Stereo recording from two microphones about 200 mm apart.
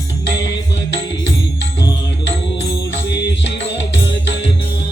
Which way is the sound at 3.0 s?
60° left (ahead or behind).